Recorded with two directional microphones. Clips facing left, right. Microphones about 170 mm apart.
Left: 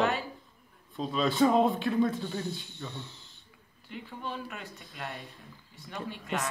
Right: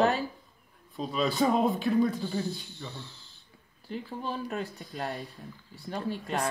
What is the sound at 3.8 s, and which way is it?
Speech, 35° right (ahead or behind).